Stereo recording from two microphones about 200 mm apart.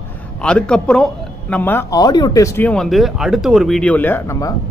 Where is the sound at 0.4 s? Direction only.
5° left (ahead or behind).